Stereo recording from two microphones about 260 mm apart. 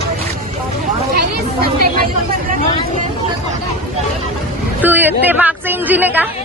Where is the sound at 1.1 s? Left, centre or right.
Right.